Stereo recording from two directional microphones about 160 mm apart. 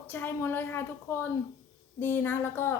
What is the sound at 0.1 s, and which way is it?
A woman's voice, 15° left (ahead or behind).